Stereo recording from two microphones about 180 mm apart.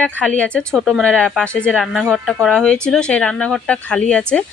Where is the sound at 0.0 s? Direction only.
5° left (ahead or behind).